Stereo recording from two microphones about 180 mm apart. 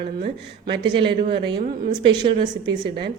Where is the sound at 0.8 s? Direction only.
25° right (ahead or behind).